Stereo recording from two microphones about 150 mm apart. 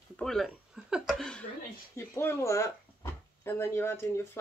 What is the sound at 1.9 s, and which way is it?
Speech, 15° left (ahead or behind).